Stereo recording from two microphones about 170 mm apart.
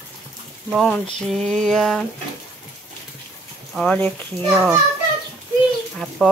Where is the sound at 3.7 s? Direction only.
5° left (ahead or behind).